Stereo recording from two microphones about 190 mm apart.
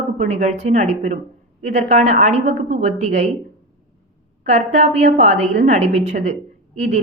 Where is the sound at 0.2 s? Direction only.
35° right (ahead or behind).